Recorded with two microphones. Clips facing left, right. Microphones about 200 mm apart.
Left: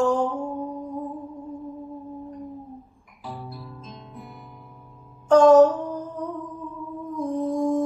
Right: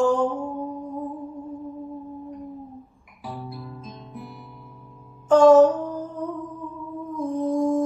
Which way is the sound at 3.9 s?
Centre (ahead or behind).